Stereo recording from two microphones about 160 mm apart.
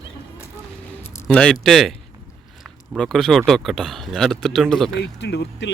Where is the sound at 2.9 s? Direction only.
5° left (ahead or behind).